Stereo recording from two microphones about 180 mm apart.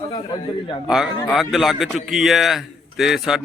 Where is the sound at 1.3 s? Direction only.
Centre (ahead or behind).